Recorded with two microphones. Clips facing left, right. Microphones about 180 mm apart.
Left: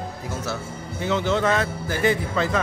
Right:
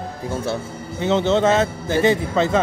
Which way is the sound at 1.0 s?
25° right (ahead or behind).